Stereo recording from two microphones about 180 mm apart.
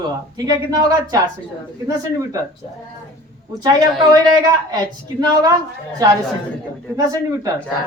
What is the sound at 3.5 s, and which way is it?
A woman's voice, 25° right (ahead or behind).